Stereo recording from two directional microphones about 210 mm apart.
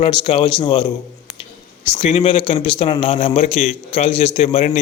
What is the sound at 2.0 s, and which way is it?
A man's voice, 30° left (ahead or behind).